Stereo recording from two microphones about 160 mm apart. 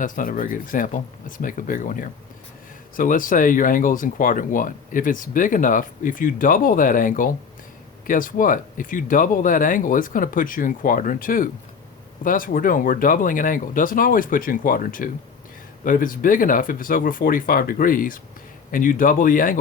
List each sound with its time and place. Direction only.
0.0 s speech: 60° left (ahead or behind)